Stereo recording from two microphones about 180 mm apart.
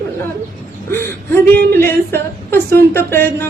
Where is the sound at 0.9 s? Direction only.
10° left (ahead or behind).